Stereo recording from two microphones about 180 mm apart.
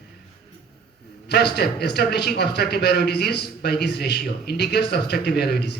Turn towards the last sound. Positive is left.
turn(degrees=65)  # may be behind; listen again after turning